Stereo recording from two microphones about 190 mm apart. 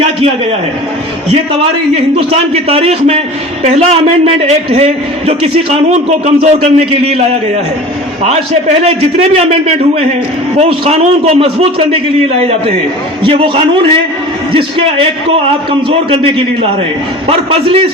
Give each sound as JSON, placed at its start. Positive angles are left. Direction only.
{"t": 2.0, "sound": "a man's voice", "side_deg": -30}
{"t": 13.2, "sound": "a man's voice", "side_deg": -25}
{"t": 15.4, "sound": "a man's voice", "side_deg": -30}